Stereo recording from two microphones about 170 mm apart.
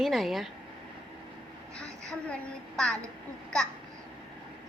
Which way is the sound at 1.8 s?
5° left (ahead or behind).